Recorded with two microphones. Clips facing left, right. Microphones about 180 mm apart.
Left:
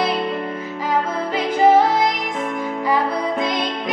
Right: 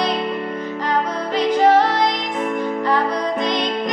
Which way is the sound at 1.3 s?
10° left (ahead or behind).